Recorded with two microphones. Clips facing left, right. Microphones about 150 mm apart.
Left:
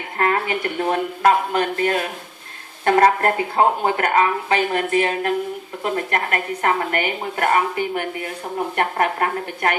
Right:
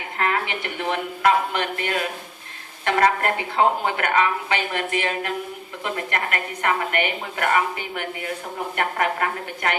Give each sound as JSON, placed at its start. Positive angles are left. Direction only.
{"t": 0.2, "sound": "speech", "side_deg": 40}